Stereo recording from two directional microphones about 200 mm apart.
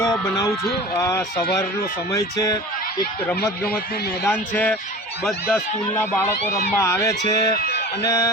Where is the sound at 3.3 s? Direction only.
50° left (ahead or behind).